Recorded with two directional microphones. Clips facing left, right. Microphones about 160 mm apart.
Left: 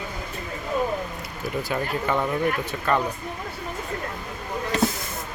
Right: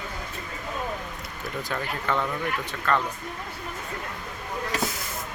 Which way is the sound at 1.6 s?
15° left (ahead or behind).